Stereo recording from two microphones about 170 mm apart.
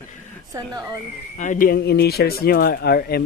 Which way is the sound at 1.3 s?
50° left (ahead or behind).